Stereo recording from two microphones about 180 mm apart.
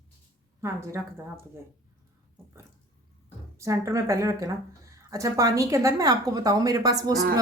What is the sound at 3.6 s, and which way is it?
Speech, 15° right (ahead or behind).